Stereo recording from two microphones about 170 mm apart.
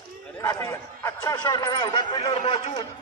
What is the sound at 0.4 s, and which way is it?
A man's voice, 20° left (ahead or behind).